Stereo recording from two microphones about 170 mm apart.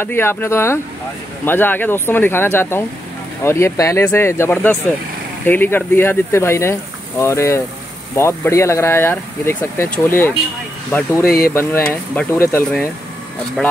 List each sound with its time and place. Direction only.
0.0 s speech: 15° left (ahead or behind)
11.2 s speech: 60° left (ahead or behind)
11.9 s speech: 15° left (ahead or behind)